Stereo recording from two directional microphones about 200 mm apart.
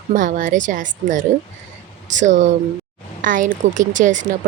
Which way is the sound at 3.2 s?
40° right (ahead or behind).